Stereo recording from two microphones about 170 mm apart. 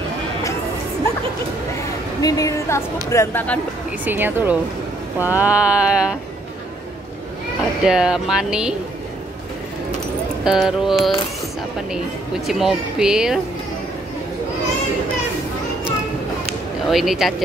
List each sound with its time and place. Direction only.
2.2 s speech: 20° left (ahead or behind)
4.0 s a sound: 10° right (ahead or behind)
7.8 s speech: 5° right (ahead or behind)
10.4 s speech: 5° right (ahead or behind)
12.4 s speech: centre (ahead or behind)
16.9 s speech: centre (ahead or behind)